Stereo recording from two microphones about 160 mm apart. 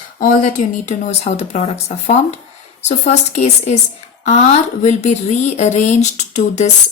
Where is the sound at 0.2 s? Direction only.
55° left (ahead or behind).